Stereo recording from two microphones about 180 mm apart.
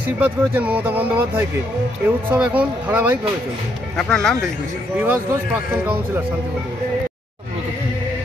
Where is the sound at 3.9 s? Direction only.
5° left (ahead or behind).